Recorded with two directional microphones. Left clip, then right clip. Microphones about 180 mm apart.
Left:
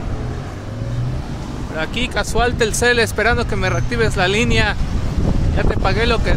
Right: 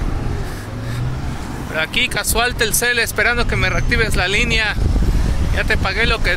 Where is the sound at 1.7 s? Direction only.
25° left (ahead or behind).